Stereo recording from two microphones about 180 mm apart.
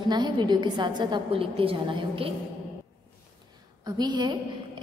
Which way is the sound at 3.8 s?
25° right (ahead or behind).